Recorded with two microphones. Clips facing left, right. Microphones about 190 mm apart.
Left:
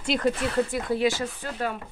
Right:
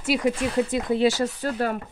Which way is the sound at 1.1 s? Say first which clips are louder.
Right 4 dB; 40° right (ahead or behind).